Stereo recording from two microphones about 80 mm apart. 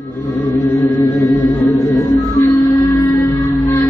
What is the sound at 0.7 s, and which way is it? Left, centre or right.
Music, left.